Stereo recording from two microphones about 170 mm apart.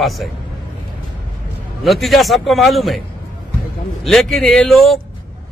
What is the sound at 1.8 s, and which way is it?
Speech, centre (ahead or behind).